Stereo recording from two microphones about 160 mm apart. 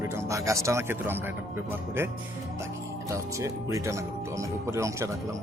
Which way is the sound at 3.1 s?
20° right (ahead or behind).